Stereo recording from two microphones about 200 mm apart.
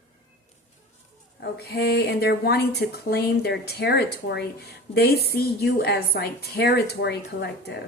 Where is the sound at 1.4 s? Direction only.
55° left (ahead or behind).